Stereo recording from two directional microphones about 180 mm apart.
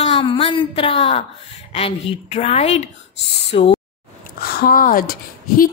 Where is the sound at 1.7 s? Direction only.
30° left (ahead or behind).